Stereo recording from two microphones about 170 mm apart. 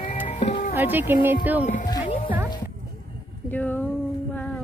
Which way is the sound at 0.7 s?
10° right (ahead or behind).